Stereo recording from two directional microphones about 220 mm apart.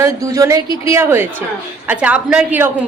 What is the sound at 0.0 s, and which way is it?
A woman's voice, 15° right (ahead or behind).